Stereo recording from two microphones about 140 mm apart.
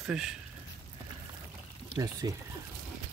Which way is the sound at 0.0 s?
5° right (ahead or behind).